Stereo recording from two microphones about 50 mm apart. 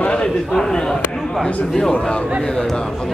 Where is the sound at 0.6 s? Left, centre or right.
Centre.